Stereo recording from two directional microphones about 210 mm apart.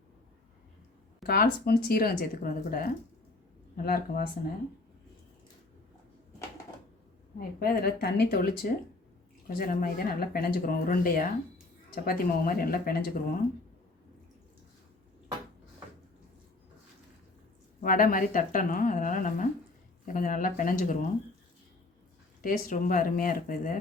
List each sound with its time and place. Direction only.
1.3 s speech: 45° left (ahead or behind)
7.3 s speech: 45° left (ahead or behind)
17.8 s speech: 40° left (ahead or behind)
22.4 s speech: 40° left (ahead or behind)